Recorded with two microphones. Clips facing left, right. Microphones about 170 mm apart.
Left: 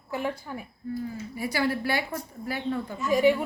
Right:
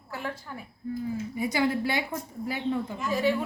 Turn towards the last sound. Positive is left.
turn(degrees=15)  # may be behind; listen again after turning